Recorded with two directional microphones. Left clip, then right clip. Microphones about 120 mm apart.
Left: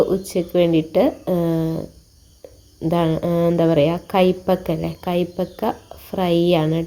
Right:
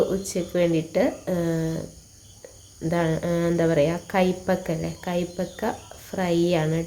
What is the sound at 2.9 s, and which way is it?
A woman's voice, 40° left (ahead or behind).